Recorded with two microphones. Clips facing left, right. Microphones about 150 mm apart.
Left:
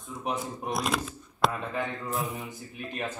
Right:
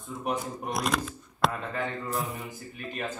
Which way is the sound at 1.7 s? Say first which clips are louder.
Even; 20° left (ahead or behind).